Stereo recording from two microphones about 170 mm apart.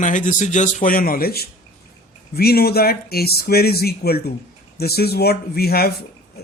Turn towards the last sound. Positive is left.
turn(degrees=65)  # may be behind; listen again after turning